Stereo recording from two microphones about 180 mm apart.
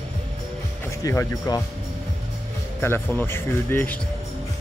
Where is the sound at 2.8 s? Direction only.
10° left (ahead or behind).